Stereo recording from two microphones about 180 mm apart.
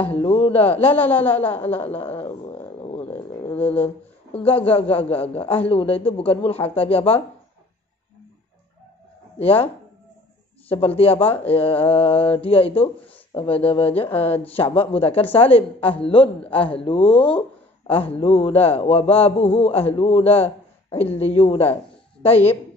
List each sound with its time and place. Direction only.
0.1 s a man's voice: 35° left (ahead or behind)
0.9 s a woman's voice: 10° left (ahead or behind)
3.0 s a sound: 10° left (ahead or behind)
4.5 s a man's voice: 30° left (ahead or behind)
9.4 s a man's voice: 30° left (ahead or behind)
10.7 s a man's voice: 30° left (ahead or behind)
17.1 s a woman's voice: 5° left (ahead or behind)
18.1 s a man's voice: 35° left (ahead or behind)